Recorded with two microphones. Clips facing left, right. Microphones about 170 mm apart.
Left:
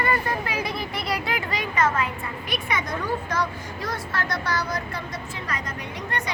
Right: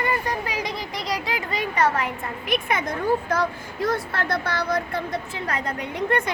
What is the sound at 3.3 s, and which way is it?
Speech, 55° right (ahead or behind).